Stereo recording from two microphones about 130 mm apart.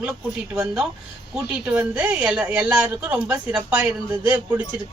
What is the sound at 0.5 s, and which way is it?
A woman's voice, 15° right (ahead or behind).